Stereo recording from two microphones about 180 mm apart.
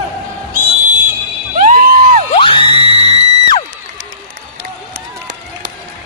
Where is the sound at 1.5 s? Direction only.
45° right (ahead or behind).